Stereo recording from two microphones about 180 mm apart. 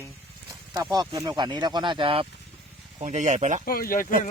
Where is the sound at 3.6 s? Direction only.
55° left (ahead or behind).